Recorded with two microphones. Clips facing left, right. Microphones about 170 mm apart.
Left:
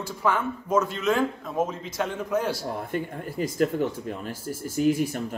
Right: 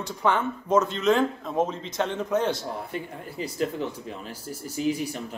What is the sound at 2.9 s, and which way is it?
Speech, 45° left (ahead or behind).